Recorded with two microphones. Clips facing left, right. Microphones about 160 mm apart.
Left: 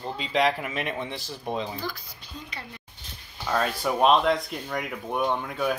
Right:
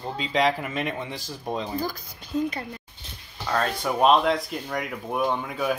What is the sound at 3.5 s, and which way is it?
Speech, 5° left (ahead or behind).